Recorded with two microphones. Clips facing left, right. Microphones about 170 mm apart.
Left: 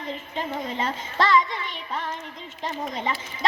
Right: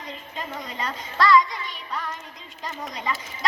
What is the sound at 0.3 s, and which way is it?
A woman's voice, 25° left (ahead or behind).